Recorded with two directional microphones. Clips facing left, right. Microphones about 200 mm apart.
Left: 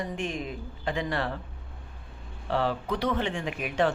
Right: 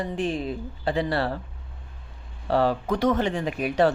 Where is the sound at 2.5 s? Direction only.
40° right (ahead or behind).